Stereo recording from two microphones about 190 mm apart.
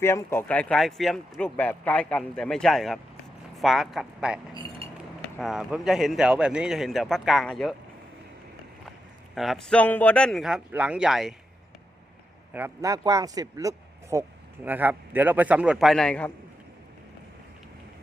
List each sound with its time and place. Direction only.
0.0 s speech: 15° left (ahead or behind); by 4.4 s 5° right (ahead or behind)
4.8 s cutlery: 30° right (ahead or behind)
5.4 s speech: centre (ahead or behind)
9.3 s speech: centre (ahead or behind)
12.5 s speech: 15° right (ahead or behind); by 16.3 s 5° left (ahead or behind)